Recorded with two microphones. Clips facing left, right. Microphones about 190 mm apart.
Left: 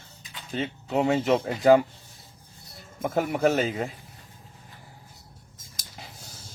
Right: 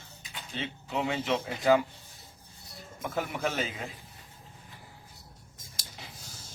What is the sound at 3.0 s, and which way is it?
Speech, 45° left (ahead or behind).